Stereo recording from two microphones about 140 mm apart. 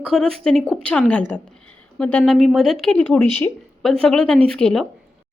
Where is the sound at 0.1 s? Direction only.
5° left (ahead or behind).